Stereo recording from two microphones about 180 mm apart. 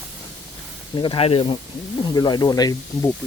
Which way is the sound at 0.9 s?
30° left (ahead or behind).